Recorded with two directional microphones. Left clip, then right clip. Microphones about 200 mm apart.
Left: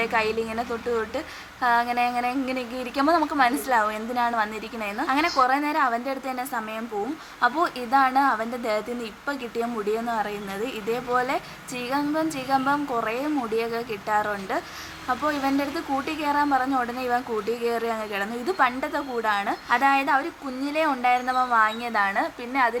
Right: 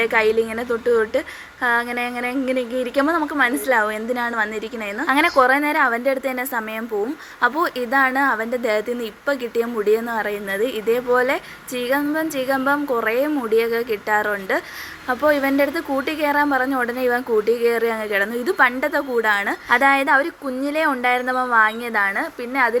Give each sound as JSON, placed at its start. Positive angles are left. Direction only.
{"t": 0.0, "sound": "a woman's voice", "side_deg": -15}